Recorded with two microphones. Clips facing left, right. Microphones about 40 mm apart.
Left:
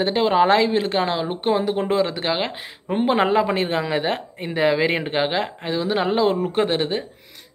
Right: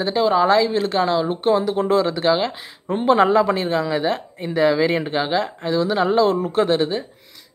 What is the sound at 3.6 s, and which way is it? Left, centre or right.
Speech, left.